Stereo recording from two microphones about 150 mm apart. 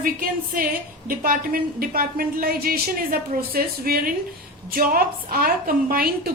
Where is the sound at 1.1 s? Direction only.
75° right (ahead or behind).